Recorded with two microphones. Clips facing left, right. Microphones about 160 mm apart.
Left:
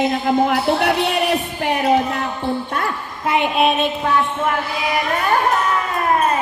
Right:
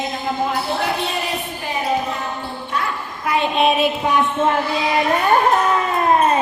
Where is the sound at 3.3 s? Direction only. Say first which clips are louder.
Left 1 dB; 15° left (ahead or behind).